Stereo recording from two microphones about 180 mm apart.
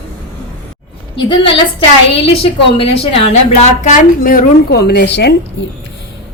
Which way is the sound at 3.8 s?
50° left (ahead or behind).